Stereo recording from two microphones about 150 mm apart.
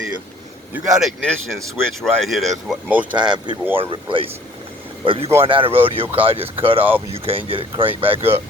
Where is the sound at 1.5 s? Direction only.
20° right (ahead or behind).